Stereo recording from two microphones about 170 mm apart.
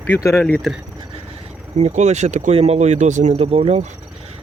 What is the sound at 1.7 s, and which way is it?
Speech, 40° right (ahead or behind).